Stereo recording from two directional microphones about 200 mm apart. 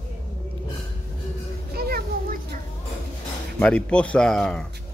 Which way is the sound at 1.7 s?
50° right (ahead or behind).